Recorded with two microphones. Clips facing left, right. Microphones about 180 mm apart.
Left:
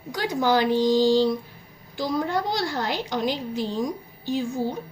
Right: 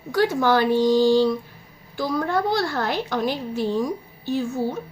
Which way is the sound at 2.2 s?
55° right (ahead or behind).